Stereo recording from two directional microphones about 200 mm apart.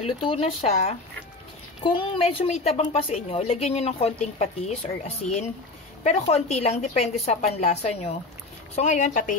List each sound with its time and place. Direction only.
0.0 s a woman's voice: 25° left (ahead or behind)